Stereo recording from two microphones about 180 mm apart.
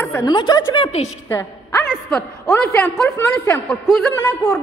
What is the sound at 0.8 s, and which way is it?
Speech, 40° left (ahead or behind).